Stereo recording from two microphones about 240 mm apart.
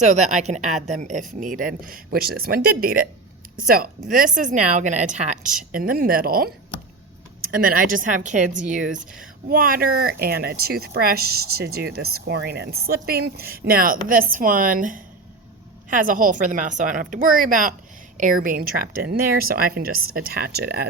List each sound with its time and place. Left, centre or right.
0.0 s speech: right
7.5 s speech: right